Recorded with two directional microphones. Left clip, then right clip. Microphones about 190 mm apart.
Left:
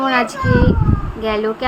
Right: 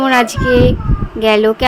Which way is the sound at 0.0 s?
45° right (ahead or behind).